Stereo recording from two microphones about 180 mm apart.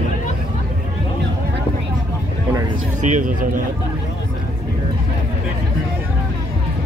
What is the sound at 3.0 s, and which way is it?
Speech, 45° right (ahead or behind).